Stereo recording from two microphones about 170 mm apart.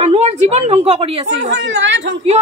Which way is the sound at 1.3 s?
90° right.